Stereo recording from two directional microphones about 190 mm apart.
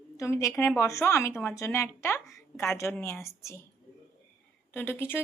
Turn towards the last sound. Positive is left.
turn(degrees=10)  # may be behind; listen again after turning